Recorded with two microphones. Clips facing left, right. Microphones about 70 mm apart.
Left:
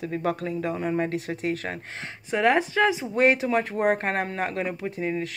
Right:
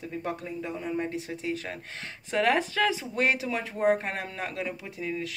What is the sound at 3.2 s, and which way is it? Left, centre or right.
Speech, left.